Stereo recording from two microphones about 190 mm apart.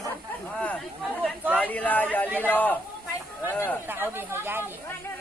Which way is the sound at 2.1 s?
10° left (ahead or behind).